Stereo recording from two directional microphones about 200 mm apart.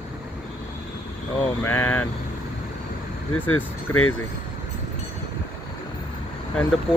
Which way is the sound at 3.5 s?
90° left.